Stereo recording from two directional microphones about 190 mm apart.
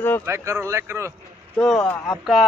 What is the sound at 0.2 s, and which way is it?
Speech, 15° right (ahead or behind).